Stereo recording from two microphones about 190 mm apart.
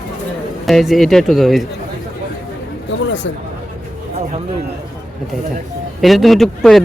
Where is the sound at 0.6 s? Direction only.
Centre (ahead or behind).